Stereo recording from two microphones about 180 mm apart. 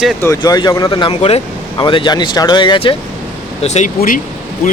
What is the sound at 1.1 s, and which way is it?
Speech, 35° left (ahead or behind).